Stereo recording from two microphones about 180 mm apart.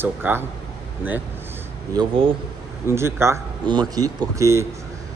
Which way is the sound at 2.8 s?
15° right (ahead or behind).